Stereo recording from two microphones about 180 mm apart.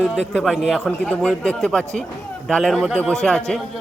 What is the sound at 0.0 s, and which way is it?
Speech, 5° left (ahead or behind).